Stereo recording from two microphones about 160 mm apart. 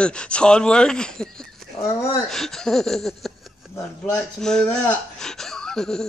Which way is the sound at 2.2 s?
Centre (ahead or behind).